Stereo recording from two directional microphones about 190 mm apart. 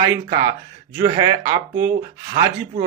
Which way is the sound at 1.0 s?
20° right (ahead or behind).